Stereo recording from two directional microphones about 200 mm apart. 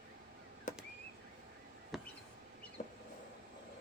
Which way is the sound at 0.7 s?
40° left (ahead or behind).